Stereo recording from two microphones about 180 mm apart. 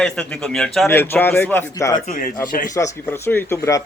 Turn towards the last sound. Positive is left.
turn(degrees=15)  # may be behind; listen again after turning